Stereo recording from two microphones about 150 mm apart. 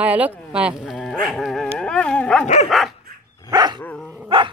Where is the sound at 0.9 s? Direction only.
5° left (ahead or behind).